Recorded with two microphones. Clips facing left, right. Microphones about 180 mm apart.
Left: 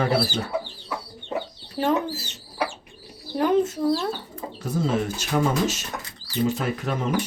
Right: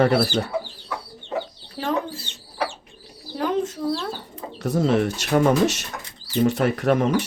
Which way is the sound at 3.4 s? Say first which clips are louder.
Left 3 dB; 5° left (ahead or behind).